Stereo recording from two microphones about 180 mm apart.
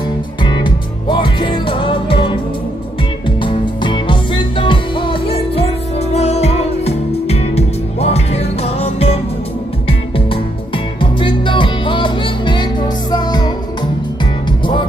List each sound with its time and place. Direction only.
0.4 s music: 25° left (ahead or behind)